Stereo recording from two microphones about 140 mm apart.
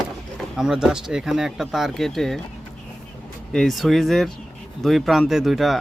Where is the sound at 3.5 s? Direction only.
5° left (ahead or behind).